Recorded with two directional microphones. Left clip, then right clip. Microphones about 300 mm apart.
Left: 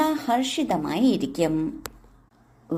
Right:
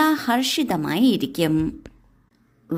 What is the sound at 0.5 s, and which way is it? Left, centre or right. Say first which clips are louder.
Speech: right 2 dB; right.